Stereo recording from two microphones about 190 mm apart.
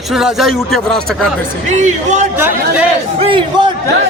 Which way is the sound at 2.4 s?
10° right (ahead or behind).